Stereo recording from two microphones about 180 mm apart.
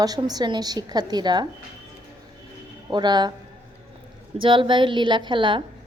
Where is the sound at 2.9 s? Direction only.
25° right (ahead or behind).